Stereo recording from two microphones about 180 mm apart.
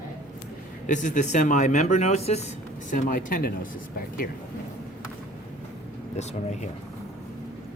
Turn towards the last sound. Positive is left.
turn(degrees=40)  # may be behind; listen again after turning